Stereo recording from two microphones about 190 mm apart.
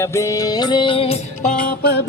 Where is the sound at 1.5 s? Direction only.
50° left (ahead or behind).